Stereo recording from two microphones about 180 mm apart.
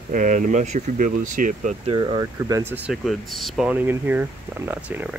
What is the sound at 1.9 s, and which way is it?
Speech, 25° right (ahead or behind).